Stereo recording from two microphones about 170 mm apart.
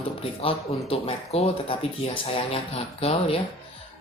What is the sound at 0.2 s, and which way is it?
Speech, 35° left (ahead or behind).